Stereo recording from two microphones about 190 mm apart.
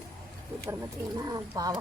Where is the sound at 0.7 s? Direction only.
15° right (ahead or behind).